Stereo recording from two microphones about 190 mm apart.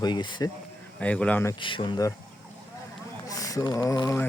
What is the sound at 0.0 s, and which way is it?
Speech, 20° left (ahead or behind).